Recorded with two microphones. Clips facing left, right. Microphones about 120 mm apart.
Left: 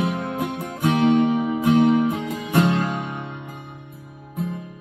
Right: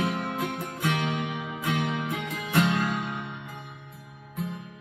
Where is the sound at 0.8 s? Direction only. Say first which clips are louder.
Left 12 dB; 25° left (ahead or behind).